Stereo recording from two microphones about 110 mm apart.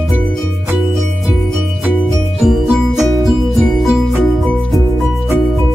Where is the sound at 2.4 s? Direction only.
5° right (ahead or behind).